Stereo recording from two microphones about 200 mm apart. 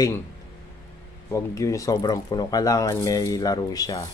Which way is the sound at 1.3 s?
15° left (ahead or behind).